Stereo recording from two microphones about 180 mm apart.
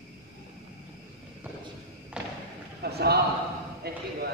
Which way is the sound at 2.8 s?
65° right (ahead or behind).